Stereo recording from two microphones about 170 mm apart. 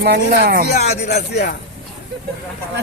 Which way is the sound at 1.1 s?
65° left (ahead or behind).